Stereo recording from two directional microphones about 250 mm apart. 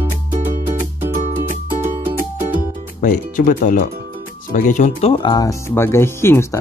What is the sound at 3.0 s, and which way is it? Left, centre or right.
Speech, left.